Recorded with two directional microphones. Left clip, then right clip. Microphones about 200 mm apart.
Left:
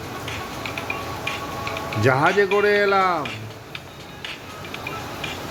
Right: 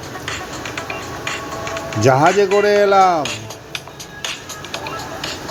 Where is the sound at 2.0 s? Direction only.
25° right (ahead or behind).